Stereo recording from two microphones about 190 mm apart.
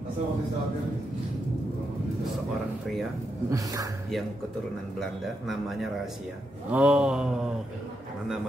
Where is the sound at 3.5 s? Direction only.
20° right (ahead or behind).